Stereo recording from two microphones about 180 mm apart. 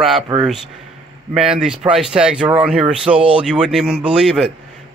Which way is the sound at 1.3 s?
5° right (ahead or behind).